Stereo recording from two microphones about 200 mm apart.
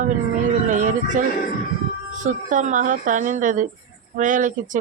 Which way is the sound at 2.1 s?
40° right (ahead or behind).